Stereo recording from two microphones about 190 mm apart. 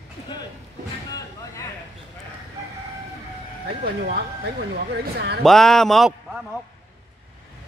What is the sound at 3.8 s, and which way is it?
Speech, 55° right (ahead or behind).